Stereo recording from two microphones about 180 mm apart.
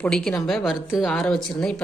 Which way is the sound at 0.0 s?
5° left (ahead or behind).